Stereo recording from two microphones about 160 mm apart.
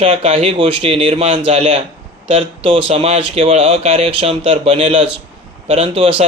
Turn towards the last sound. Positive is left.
turn(degrees=-35)  # may be behind; listen again after turning